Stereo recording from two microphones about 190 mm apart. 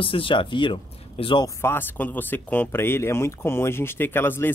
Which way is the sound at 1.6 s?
10° left (ahead or behind).